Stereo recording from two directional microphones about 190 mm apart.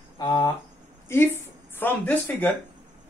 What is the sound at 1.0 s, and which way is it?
Speech, 10° left (ahead or behind).